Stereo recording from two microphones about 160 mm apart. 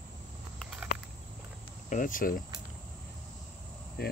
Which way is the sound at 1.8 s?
55° left (ahead or behind).